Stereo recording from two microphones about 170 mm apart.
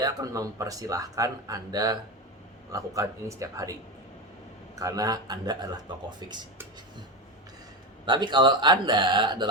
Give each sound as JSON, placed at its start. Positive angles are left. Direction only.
{"t": 0.0, "sound": "speech", "side_deg": -20}
{"t": 8.0, "sound": "speech", "side_deg": -25}